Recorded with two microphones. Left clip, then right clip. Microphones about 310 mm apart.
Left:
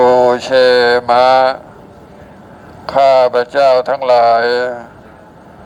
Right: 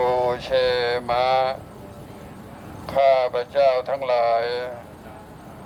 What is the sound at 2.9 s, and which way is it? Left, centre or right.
Speech, left.